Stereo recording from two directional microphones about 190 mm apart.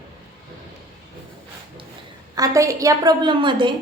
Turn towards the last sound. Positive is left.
turn(degrees=-25)  # may be behind; listen again after turning